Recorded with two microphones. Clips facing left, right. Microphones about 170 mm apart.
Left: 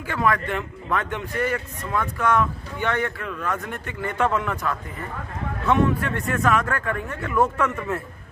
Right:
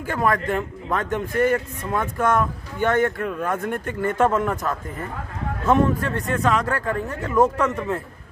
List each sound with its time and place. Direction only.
0.0 s a man's voice: 45° right (ahead or behind)
7.5 s speech: 15° right (ahead or behind)